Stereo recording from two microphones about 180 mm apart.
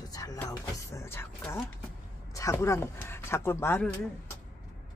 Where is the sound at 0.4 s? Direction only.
15° left (ahead or behind).